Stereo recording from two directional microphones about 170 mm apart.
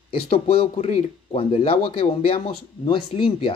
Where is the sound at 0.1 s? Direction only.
35° left (ahead or behind).